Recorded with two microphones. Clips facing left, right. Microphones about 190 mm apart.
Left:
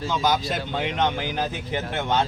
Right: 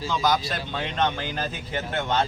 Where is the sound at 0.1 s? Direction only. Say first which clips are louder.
Left 1 dB; 20° left (ahead or behind).